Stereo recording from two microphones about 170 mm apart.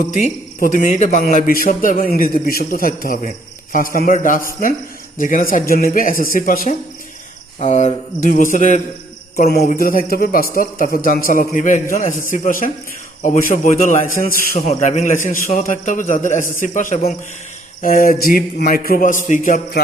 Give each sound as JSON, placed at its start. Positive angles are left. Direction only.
{"t": 0.8, "sound": "a man's voice", "side_deg": 45}
{"t": 7.6, "sound": "a man's voice", "side_deg": 40}
{"t": 9.5, "sound": "a man's voice", "side_deg": 65}
{"t": 17.8, "sound": "a man's voice", "side_deg": 55}